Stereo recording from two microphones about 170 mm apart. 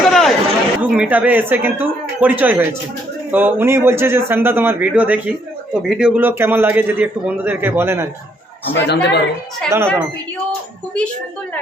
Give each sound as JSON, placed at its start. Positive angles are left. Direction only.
{"t": 0.1, "sound": "chatter", "side_deg": 0}
{"t": 0.8, "sound": "a man's voice", "side_deg": -10}
{"t": 8.7, "sound": "a man's voice", "side_deg": 85}
{"t": 9.6, "sound": "a man's voice", "side_deg": -15}